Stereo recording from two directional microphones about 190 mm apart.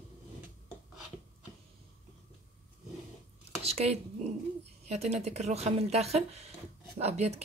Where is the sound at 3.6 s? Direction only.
35° right (ahead or behind).